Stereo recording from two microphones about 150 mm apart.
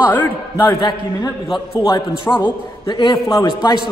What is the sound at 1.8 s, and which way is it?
A man's voice, 20° left (ahead or behind).